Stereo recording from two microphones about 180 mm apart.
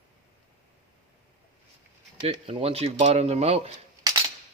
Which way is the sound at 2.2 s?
30° right (ahead or behind).